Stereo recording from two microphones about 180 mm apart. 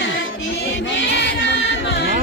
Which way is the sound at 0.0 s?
90° left.